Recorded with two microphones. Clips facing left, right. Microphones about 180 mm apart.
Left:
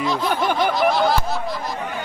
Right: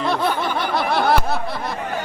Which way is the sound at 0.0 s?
60° right (ahead or behind).